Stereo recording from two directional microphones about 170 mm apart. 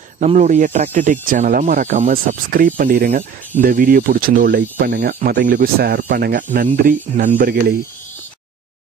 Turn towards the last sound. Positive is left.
turn(degrees=-65)  # may be behind; listen again after turning